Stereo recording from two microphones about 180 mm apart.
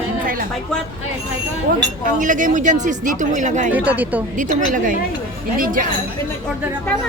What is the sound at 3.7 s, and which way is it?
Speech, 10° right (ahead or behind).